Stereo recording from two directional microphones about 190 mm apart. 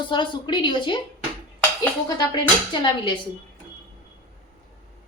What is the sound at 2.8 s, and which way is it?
Speech, 25° left (ahead or behind).